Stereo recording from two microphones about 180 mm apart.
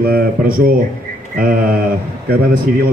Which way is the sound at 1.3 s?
55° right (ahead or behind).